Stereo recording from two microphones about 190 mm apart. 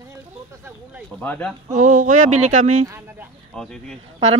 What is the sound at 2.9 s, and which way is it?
Speech, 10° right (ahead or behind).